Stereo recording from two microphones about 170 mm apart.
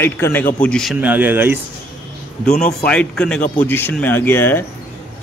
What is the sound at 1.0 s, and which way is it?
Speech, 10° right (ahead or behind).